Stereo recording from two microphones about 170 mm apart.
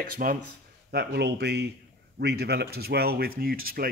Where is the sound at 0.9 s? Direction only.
70° right (ahead or behind).